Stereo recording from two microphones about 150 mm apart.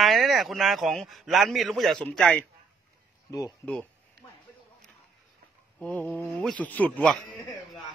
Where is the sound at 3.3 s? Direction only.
20° left (ahead or behind).